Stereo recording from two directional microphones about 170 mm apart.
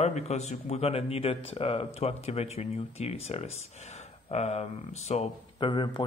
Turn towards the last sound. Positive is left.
turn(degrees=30)  # may be behind; listen again after turning